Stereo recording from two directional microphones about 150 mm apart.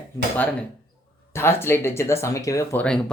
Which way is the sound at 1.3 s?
15° left (ahead or behind).